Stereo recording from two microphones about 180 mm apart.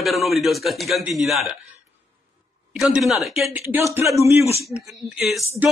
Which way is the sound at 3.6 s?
15° right (ahead or behind).